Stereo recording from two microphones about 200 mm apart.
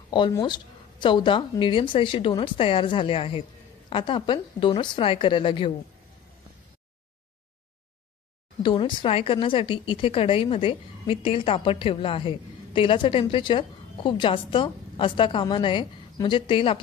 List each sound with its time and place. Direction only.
0.1 s a woman's voice: 20° left (ahead or behind)
8.6 s a woman's voice: 25° left (ahead or behind)